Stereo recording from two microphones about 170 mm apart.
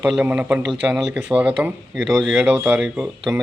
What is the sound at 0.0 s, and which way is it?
Speech, 5° right (ahead or behind).